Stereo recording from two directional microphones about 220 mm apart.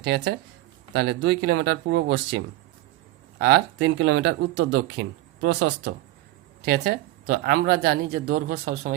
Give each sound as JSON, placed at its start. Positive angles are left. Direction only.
{"t": 0.0, "sound": "speech", "side_deg": -50}